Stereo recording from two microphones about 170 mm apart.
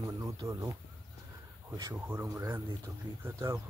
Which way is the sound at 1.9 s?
10° right (ahead or behind).